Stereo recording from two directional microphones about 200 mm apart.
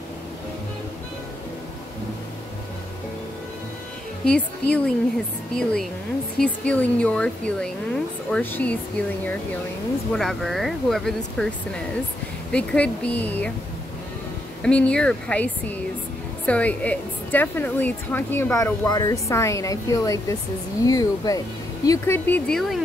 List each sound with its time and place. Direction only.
4.2 s a woman's voice: 5° left (ahead or behind)
14.6 s a woman's voice: 5° left (ahead or behind)